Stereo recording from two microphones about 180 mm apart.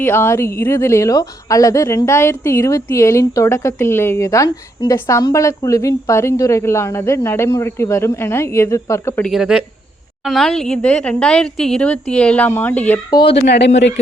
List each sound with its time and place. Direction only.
0.0 s a woman's voice: 15° left (ahead or behind)
9.3 s a woman's voice: centre (ahead or behind)
13.1 s speech: 25° left (ahead or behind)
13.3 s speech: 75° left (ahead or behind)